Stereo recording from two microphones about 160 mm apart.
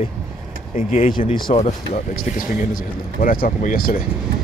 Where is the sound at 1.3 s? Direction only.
30° left (ahead or behind).